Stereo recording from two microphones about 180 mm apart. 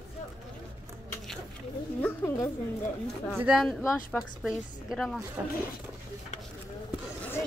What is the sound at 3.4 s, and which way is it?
A woman's voice, centre (ahead or behind).